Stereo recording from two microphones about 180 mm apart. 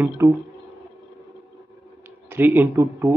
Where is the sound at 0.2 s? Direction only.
20° right (ahead or behind).